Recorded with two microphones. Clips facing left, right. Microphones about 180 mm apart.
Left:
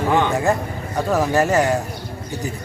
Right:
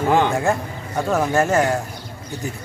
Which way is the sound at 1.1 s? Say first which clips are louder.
Left 1 dB; centre (ahead or behind).